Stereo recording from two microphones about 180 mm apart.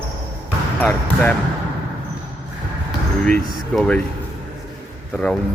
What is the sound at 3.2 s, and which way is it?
Speech, 5° left (ahead or behind).